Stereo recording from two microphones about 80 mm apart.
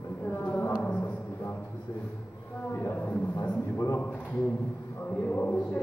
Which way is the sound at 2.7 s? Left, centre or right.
Left.